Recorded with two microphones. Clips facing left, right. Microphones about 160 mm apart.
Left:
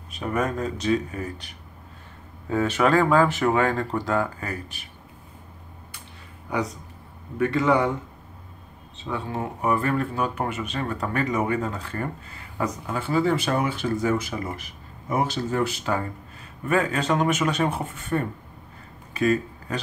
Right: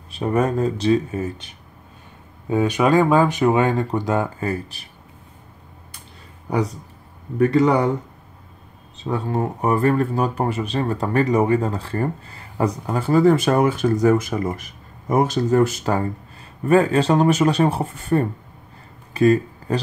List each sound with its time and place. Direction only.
0.1 s speech: 30° right (ahead or behind)
2.5 s speech: 15° right (ahead or behind); by 4.8 s 30° right (ahead or behind)
6.5 s speech: 35° right (ahead or behind)
9.0 s speech: 40° right (ahead or behind)
19.1 s a sound: 35° right (ahead or behind)